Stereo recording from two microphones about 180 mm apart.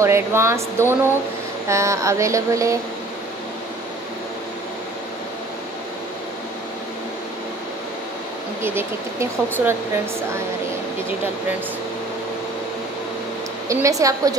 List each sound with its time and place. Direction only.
0.0 s speech: 15° right (ahead or behind)
8.6 s speech: 15° right (ahead or behind)
13.7 s speech: 15° right (ahead or behind)